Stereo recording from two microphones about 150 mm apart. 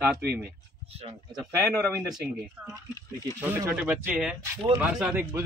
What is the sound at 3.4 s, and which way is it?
A man's voice, 15° right (ahead or behind).